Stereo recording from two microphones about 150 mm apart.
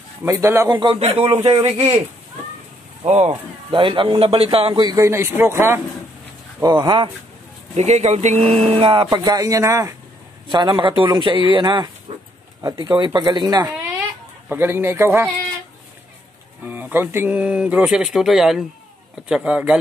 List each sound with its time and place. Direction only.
0.2 s speech: 15° right (ahead or behind)
0.7 s speech: 40° right (ahead or behind)
3.0 s speech: 45° right (ahead or behind)
3.7 s speech: 35° right (ahead or behind)
4.8 s speech: 20° right (ahead or behind)
6.6 s speech: 25° right (ahead or behind)
7.7 s speech: 50° right (ahead or behind); by 9.9 s 20° right (ahead or behind)
10.5 s speech: 30° right (ahead or behind)
12.9 s speech: 30° right (ahead or behind)
14.5 s speech: 15° right (ahead or behind)
16.6 s speech: 10° right (ahead or behind)